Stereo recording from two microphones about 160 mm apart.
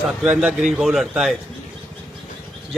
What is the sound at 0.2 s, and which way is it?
A man's voice, 5° right (ahead or behind).